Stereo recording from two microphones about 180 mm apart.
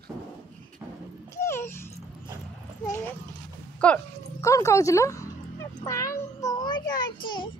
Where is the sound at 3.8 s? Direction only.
5° left (ahead or behind).